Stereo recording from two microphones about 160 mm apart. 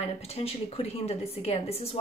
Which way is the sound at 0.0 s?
40° left (ahead or behind).